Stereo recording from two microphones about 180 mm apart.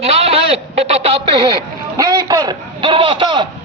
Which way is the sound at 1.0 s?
30° right (ahead or behind).